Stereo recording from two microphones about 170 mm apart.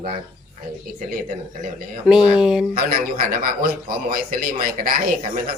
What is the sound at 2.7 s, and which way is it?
A man's voice, 60° right (ahead or behind).